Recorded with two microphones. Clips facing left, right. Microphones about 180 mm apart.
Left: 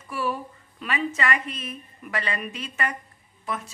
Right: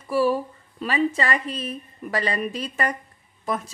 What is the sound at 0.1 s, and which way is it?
A woman's voice, 35° right (ahead or behind).